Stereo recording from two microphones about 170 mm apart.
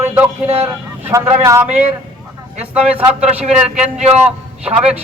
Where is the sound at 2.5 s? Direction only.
35° right (ahead or behind).